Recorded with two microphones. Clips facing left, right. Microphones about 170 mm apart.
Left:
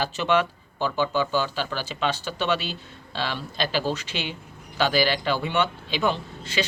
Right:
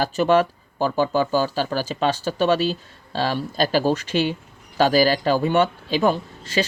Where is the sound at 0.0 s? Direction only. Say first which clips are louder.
Right 5 dB; 45° right (ahead or behind).